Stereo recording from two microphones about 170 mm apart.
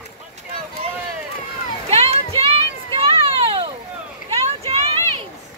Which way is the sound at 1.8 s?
35° right (ahead or behind).